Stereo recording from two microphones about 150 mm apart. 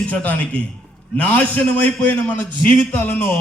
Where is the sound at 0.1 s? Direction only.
10° left (ahead or behind).